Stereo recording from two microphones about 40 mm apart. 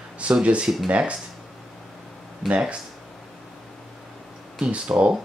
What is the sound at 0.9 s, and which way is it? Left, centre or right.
Speech, right.